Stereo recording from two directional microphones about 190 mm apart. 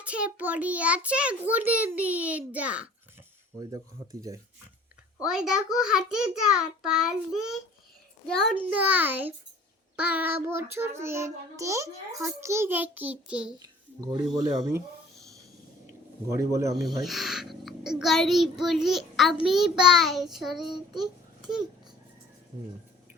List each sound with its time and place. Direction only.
0.0 s a child's voice: 5° right (ahead or behind)
3.6 s speech: 20° right (ahead or behind)
5.2 s a child's voice: 5° right (ahead or behind)
8.5 s a child's voice: 5° right (ahead or behind)
13.6 s a child's voice: 20° right (ahead or behind)
16.3 s a child's voice: 15° right (ahead or behind)
16.8 s a child's voice: centre (ahead or behind)